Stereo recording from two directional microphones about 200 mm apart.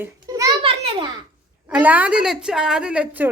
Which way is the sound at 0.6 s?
30° right (ahead or behind).